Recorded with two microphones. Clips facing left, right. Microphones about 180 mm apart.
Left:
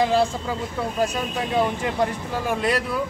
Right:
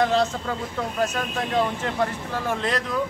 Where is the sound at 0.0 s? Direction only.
10° left (ahead or behind).